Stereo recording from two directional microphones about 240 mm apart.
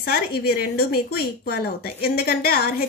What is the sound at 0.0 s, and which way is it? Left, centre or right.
A woman's voice, left.